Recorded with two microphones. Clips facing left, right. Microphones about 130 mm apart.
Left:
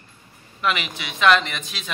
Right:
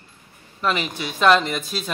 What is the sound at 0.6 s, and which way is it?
Speech, 35° right (ahead or behind).